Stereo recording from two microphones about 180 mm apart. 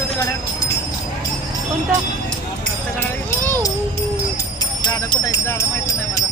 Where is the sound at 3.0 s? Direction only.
10° left (ahead or behind).